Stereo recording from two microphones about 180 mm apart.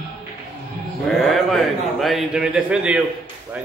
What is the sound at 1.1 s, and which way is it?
A man's voice, centre (ahead or behind).